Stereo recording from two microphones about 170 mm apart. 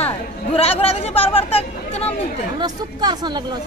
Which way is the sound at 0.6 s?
35° left (ahead or behind).